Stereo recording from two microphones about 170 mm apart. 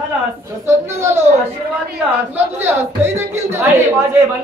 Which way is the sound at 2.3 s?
15° right (ahead or behind).